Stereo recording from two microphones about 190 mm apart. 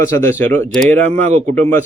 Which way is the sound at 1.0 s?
35° right (ahead or behind).